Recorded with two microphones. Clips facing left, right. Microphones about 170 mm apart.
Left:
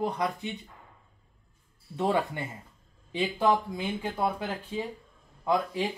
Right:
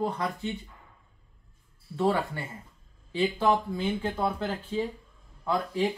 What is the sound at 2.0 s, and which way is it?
A man's voice, 20° left (ahead or behind).